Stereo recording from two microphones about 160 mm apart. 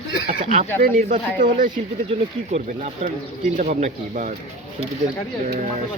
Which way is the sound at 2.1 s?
40° right (ahead or behind).